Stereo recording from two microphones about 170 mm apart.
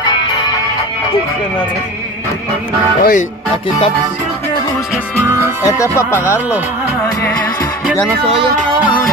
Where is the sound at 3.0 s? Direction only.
55° left (ahead or behind).